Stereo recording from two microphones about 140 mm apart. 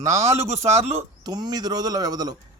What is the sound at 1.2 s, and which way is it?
A man's voice, 30° right (ahead or behind).